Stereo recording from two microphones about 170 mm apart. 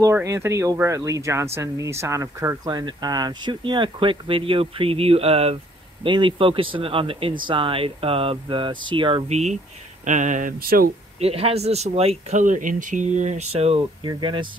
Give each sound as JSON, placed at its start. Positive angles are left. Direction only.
{"t": 0.0, "sound": "speech", "side_deg": -15}
{"t": 9.3, "sound": "speech", "side_deg": -40}
{"t": 11.1, "sound": "speech", "side_deg": -35}
{"t": 14.0, "sound": "speech", "side_deg": -30}